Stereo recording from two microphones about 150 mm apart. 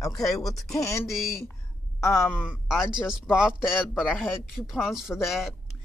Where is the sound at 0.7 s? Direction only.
20° left (ahead or behind).